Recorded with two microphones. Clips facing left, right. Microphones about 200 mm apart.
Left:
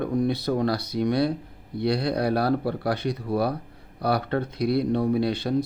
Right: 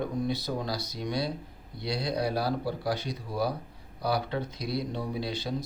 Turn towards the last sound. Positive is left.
turn(degrees=60)  # may be behind; listen again after turning